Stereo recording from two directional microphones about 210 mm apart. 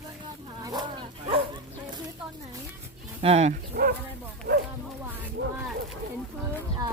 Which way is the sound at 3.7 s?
45° right (ahead or behind).